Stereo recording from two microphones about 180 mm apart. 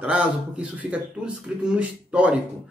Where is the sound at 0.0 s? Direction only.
5° right (ahead or behind).